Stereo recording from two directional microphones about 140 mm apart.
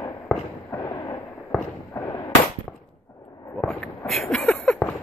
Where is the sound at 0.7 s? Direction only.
25° left (ahead or behind).